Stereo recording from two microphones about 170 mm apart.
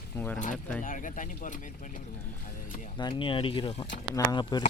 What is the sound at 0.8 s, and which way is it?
Speech, 50° left (ahead or behind).